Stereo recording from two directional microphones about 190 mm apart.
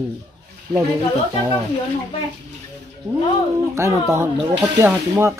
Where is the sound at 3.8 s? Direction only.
15° right (ahead or behind).